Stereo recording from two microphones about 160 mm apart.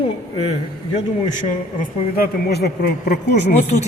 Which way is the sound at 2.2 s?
80° left.